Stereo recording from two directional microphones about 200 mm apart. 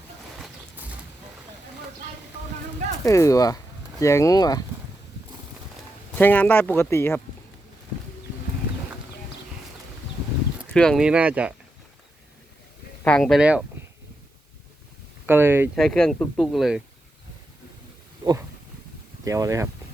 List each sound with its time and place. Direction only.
0.3 s bird: 5° right (ahead or behind)
3.0 s speech: 15° left (ahead or behind)
6.1 s speech: 10° left (ahead or behind)
10.7 s speech: 5° left (ahead or behind)
13.1 s speech: 5° left (ahead or behind)
15.3 s speech: 10° right (ahead or behind)
15.7 s speech: centre (ahead or behind)
19.2 s speech: 15° right (ahead or behind)